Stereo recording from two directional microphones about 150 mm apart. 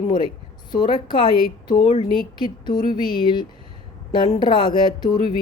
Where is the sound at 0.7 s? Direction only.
30° left (ahead or behind).